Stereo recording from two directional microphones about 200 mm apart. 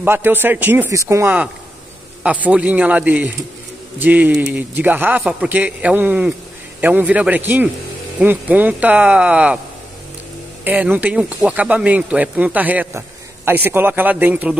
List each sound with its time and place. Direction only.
0.0 s speech: 10° right (ahead or behind)
10.6 s speech: 10° right (ahead or behind)